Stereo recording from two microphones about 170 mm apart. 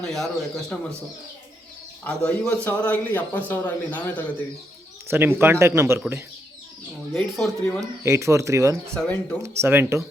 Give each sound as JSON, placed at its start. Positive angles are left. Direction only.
{"t": 0.0, "sound": "speech", "side_deg": 0}
{"t": 2.0, "sound": "speech", "side_deg": 5}
{"t": 5.0, "sound": "speech", "side_deg": -10}
{"t": 7.1, "sound": "speech", "side_deg": 5}
{"t": 7.8, "sound": "speech", "side_deg": -15}
{"t": 9.0, "sound": "speech", "side_deg": 10}
{"t": 9.4, "sound": "speech", "side_deg": -15}